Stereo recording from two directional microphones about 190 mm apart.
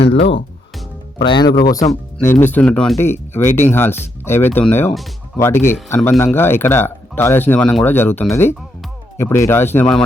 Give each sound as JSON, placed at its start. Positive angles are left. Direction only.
{"t": 1.2, "sound": "a man's voice", "side_deg": 25}